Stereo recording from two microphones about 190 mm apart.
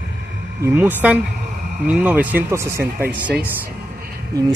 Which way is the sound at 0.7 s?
10° right (ahead or behind).